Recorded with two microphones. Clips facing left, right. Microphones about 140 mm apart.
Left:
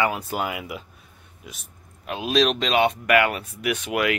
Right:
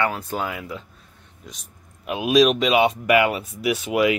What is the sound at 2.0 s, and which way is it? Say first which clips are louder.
Speech: right 4 dB; 10° right (ahead or behind).